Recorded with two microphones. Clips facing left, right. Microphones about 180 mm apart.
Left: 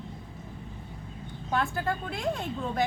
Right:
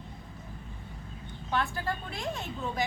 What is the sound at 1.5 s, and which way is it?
A woman's voice, 50° left (ahead or behind).